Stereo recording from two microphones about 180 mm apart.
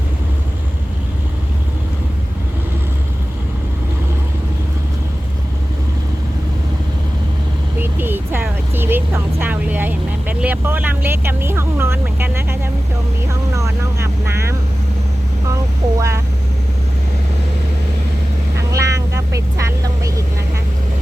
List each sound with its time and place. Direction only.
7.8 s vehicle: 10° right (ahead or behind)
16.0 s vehicle: 15° right (ahead or behind)
18.7 s vehicle: 15° right (ahead or behind)